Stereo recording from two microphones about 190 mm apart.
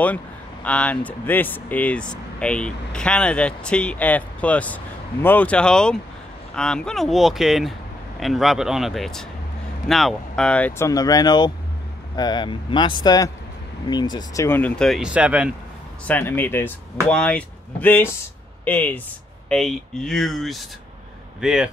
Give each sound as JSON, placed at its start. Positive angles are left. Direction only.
{"t": 0.7, "sound": "speech", "side_deg": 5}
{"t": 10.9, "sound": "speech", "side_deg": 20}
{"t": 16.1, "sound": "speech", "side_deg": 10}